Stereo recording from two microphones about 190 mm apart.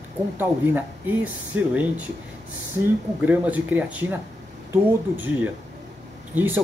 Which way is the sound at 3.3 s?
10° right (ahead or behind).